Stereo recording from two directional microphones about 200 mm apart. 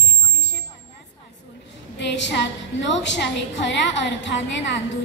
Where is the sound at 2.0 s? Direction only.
60° left (ahead or behind).